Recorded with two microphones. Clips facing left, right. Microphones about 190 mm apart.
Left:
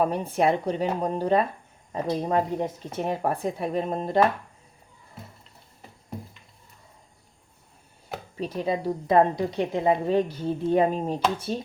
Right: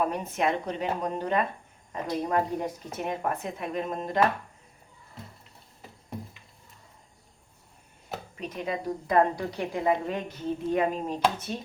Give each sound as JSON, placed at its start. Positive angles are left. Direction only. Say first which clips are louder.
{"t": 0.0, "sound": "a woman's voice", "louder": "left 4 dB", "side_deg": 30}
{"t": 8.4, "sound": "a woman's voice", "louder": "left 6 dB", "side_deg": 30}